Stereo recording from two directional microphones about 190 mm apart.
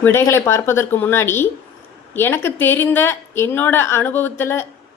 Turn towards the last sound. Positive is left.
turn(degrees=10)  # may be behind; listen again after turning